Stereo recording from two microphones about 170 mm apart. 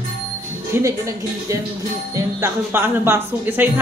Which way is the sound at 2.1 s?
15° right (ahead or behind).